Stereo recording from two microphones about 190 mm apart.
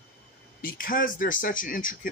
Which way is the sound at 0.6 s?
45° left (ahead or behind).